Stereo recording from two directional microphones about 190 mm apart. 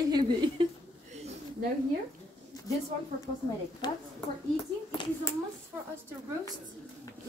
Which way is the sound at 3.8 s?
20° left (ahead or behind).